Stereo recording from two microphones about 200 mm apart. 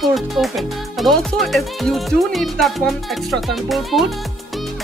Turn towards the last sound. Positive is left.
turn(degrees=0)  # may be behind; listen again after turning